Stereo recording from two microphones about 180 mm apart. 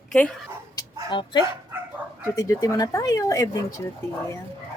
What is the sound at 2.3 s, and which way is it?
A woman's voice, 20° left (ahead or behind).